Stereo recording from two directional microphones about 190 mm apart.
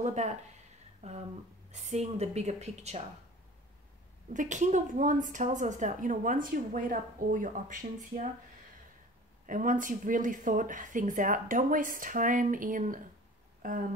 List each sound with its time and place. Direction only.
0.0 s a woman's voice: 40° right (ahead or behind)
4.3 s a woman's voice: 40° right (ahead or behind)
9.5 s a woman's voice: 45° right (ahead or behind)
13.6 s a sound: 45° right (ahead or behind)